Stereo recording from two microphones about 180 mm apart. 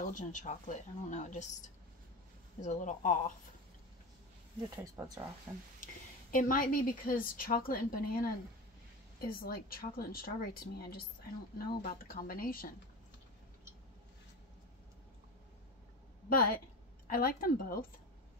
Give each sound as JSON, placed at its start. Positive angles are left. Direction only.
{"t": 0.0, "sound": "a woman's voice", "side_deg": 45}
{"t": 2.6, "sound": "a woman's voice", "side_deg": 40}
{"t": 4.6, "sound": "speech", "side_deg": -20}
{"t": 6.3, "sound": "a woman's voice", "side_deg": 50}
{"t": 9.3, "sound": "a woman's voice", "side_deg": 55}
{"t": 16.3, "sound": "a woman's voice", "side_deg": 55}